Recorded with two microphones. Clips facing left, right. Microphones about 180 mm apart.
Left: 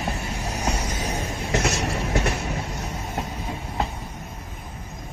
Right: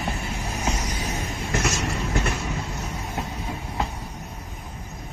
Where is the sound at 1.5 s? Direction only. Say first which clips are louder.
Left 2 dB; 65° left (ahead or behind).